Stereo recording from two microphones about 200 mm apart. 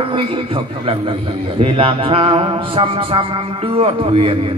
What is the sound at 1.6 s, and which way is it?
A man's voice, 30° right (ahead or behind).